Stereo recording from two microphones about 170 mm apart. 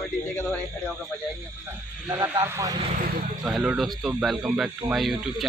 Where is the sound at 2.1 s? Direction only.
15° right (ahead or behind).